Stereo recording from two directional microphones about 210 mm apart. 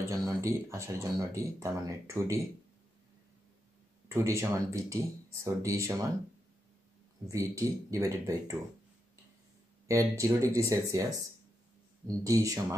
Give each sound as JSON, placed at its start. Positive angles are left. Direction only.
{"t": 0.1, "sound": "speech", "side_deg": -15}
{"t": 4.1, "sound": "speech", "side_deg": -15}
{"t": 7.2, "sound": "speech", "side_deg": -15}
{"t": 9.8, "sound": "speech", "side_deg": -15}
{"t": 12.2, "sound": "speech", "side_deg": -15}